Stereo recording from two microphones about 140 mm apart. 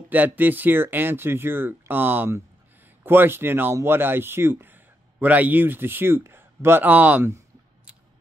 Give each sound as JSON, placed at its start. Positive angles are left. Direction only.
{"t": 0.1, "sound": "speech", "side_deg": -15}